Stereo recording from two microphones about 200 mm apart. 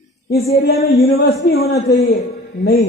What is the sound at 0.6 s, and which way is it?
A man's voice, 50° left (ahead or behind).